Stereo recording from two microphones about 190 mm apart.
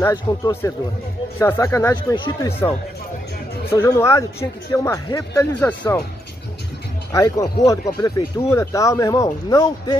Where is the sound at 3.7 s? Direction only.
15° left (ahead or behind).